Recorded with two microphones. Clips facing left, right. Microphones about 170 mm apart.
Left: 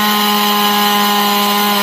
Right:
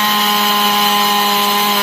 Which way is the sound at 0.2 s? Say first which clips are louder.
Left 2 dB; 5° left (ahead or behind).